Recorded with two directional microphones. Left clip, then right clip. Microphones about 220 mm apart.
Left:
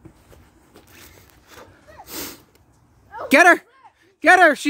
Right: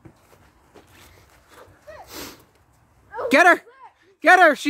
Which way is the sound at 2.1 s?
35° left (ahead or behind).